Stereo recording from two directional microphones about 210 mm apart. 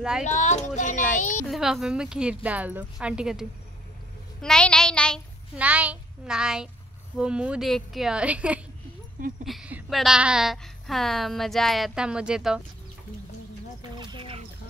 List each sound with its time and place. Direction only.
0.2 s a child's voice: 35° left (ahead or behind)
1.5 s a woman's voice: centre (ahead or behind)
5.6 s a woman's voice: 5° right (ahead or behind)
13.9 s a sound: 20° right (ahead or behind)